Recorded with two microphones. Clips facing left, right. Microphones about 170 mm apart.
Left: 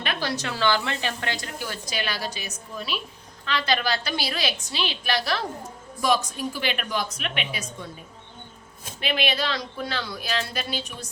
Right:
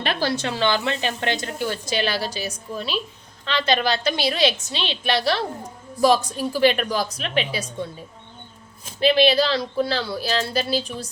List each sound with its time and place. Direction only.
0.0 s a woman's voice: 30° right (ahead or behind)
9.0 s speech: 35° right (ahead or behind)